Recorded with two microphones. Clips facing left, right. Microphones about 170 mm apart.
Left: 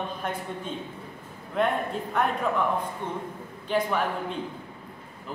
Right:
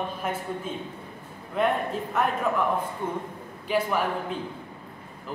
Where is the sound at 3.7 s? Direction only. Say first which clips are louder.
Right 1 dB; 5° right (ahead or behind).